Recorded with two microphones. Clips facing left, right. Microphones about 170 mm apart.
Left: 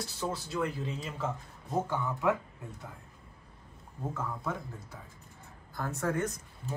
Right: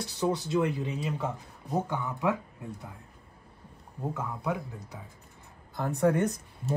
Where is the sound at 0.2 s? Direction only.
20° right (ahead or behind).